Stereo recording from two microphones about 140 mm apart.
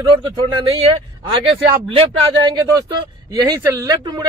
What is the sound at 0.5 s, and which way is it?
Speech, 40° right (ahead or behind).